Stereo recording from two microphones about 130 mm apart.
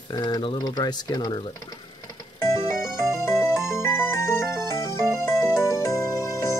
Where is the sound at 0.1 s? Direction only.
30° left (ahead or behind).